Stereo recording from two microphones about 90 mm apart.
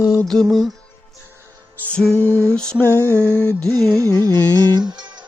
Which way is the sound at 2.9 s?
25° right (ahead or behind).